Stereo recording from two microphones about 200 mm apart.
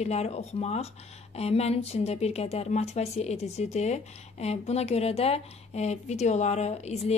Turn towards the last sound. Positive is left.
turn(degrees=35)  # may be behind; listen again after turning